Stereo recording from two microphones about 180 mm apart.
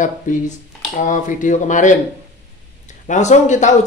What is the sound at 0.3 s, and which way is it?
Speech, 45° left (ahead or behind).